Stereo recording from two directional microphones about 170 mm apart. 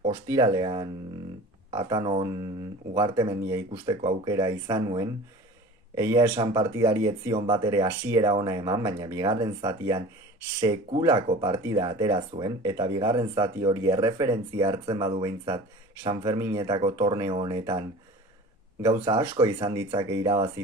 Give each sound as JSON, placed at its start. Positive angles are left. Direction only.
{"t": 0.0, "sound": "speech", "side_deg": -20}